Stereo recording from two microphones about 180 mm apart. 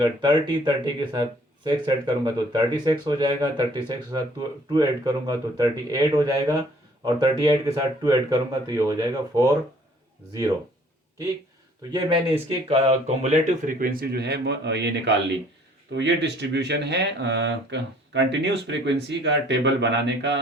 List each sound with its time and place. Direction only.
0.0 s speech: 25° right (ahead or behind)
11.9 s speech: 25° right (ahead or behind); by 20.4 s 80° right